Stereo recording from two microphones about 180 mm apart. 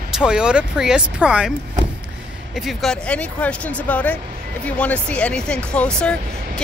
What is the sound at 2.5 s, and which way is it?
Speech, centre (ahead or behind).